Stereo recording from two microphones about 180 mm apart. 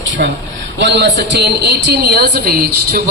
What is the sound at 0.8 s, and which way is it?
A woman's voice, 75° right (ahead or behind).